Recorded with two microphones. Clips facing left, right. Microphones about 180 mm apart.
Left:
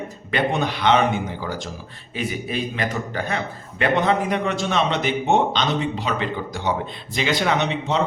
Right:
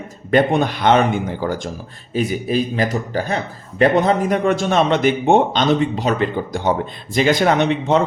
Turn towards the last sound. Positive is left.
turn(degrees=-50)  # may be behind; listen again after turning